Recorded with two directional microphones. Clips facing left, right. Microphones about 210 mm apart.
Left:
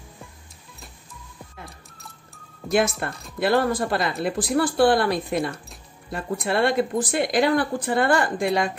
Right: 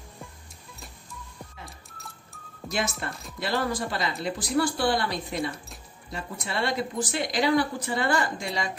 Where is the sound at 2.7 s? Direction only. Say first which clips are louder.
Left 8 dB; 55° left (ahead or behind).